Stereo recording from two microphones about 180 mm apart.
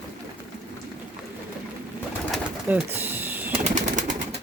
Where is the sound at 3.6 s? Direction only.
45° right (ahead or behind).